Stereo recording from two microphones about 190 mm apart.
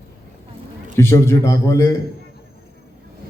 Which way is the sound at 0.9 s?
15° left (ahead or behind).